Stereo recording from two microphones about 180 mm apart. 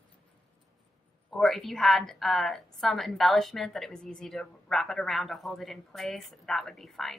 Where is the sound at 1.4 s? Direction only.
Centre (ahead or behind).